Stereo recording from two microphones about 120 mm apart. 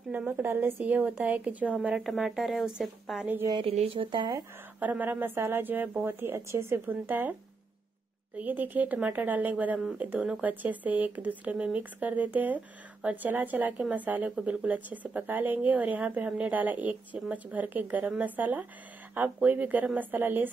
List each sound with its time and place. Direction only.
0.3 s speech: 20° right (ahead or behind); by 3.3 s centre (ahead or behind)
3.6 s speech: 55° right (ahead or behind); by 4.4 s 40° right (ahead or behind)
4.7 s speech: 15° right (ahead or behind)
8.4 s speech: 15° right (ahead or behind)